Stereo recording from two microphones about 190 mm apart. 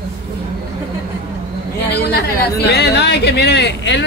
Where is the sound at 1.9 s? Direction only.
60° left (ahead or behind).